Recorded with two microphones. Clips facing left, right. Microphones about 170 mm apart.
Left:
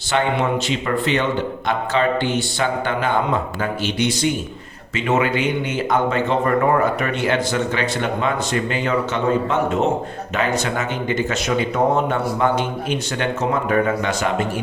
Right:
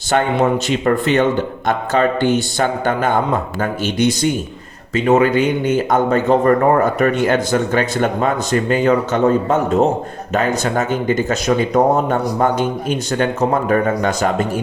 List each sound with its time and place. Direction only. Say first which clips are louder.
0.1 s speech: right 4 dB; 45° right (ahead or behind)